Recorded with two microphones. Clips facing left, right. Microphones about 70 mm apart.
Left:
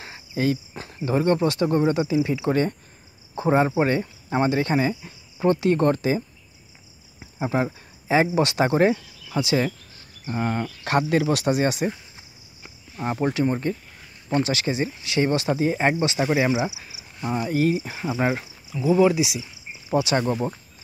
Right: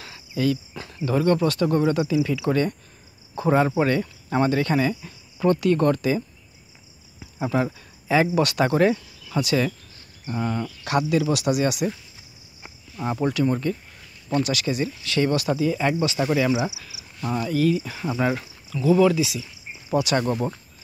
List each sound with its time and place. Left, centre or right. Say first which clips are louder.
0.0 s speech: even; left
10.3 s speech: left 1 dB; left
15.5 s speech: left 1 dB; left
16.2 s speech: even; centre
17.5 s speech: right 1 dB; left
17.7 s speech: even; left
18.4 s speech: right 1 dB; centre